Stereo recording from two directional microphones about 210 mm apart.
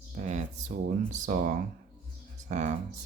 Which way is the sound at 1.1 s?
35° right (ahead or behind).